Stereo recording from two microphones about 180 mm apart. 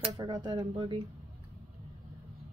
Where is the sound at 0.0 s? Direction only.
20° right (ahead or behind).